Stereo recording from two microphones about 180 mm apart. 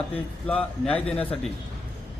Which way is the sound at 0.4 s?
10° left (ahead or behind).